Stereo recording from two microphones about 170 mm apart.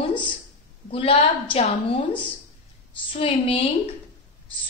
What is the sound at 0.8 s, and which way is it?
Speech, 35° left (ahead or behind).